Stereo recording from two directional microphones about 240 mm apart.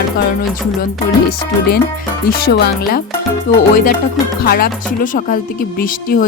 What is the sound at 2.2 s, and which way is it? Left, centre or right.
Speech, left.